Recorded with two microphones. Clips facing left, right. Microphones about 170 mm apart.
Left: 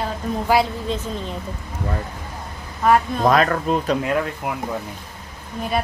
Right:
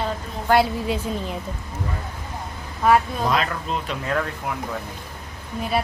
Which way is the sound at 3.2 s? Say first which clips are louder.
Left 6 dB; 55° left (ahead or behind).